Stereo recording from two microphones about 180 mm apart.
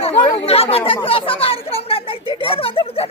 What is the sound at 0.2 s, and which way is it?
Chatter, 30° left (ahead or behind).